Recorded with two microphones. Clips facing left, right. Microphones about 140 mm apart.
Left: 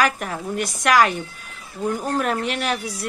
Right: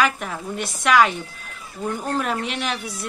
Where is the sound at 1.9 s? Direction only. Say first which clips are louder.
Left 1 dB; centre (ahead or behind).